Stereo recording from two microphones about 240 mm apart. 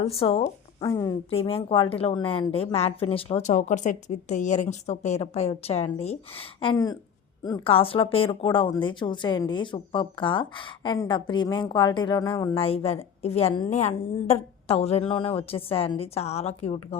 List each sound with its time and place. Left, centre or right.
0.0 s speech: left